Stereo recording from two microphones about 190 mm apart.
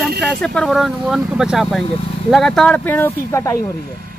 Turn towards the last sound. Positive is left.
turn(degrees=15)  # may be behind; listen again after turning